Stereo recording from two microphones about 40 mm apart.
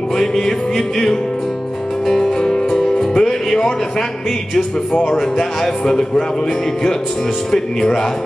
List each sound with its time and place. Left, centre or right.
0.4 s speech: centre
2.4 s music: centre
5.0 s speech: centre
7.5 s speech: centre